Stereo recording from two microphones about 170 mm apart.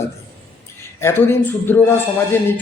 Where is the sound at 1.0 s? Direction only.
15° left (ahead or behind).